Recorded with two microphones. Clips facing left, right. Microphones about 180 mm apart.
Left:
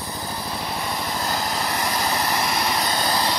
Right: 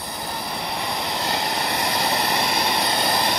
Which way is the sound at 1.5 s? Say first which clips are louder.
Even; 65° right (ahead or behind).